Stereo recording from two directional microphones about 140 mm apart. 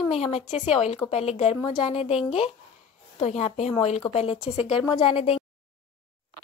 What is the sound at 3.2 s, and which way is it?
A woman's voice, 50° left (ahead or behind).